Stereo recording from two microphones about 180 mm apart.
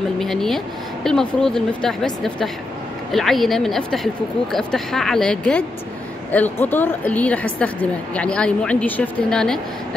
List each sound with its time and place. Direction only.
0.2 s a woman's voice: centre (ahead or behind)